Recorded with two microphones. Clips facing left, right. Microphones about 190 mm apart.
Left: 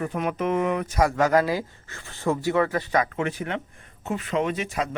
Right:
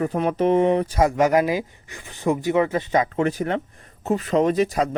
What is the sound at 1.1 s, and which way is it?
Speech, 20° right (ahead or behind).